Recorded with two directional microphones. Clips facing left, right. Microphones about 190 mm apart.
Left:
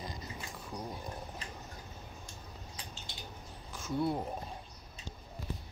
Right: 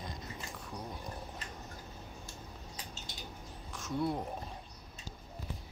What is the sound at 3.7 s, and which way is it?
Speech, centre (ahead or behind).